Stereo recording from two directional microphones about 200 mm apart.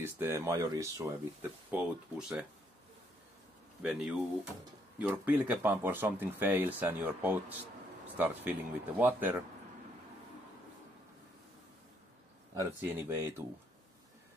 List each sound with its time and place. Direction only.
0.0 s speech: 10° right (ahead or behind)
3.8 s speech: 5° right (ahead or behind)
12.5 s speech: 10° right (ahead or behind)